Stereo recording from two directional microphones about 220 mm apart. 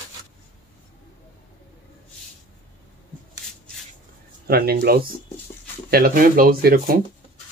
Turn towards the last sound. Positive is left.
turn(degrees=-40)  # may be behind; listen again after turning